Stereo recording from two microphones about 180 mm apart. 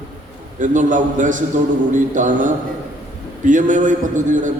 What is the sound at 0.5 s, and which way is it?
A man's voice, 45° right (ahead or behind).